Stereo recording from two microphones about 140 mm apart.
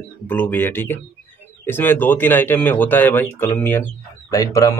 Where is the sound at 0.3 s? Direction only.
15° left (ahead or behind).